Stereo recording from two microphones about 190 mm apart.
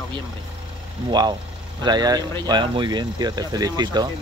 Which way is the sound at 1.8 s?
20° right (ahead or behind).